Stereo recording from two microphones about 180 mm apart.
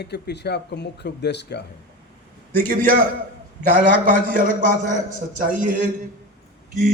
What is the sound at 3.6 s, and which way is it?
A man's voice, 50° right (ahead or behind).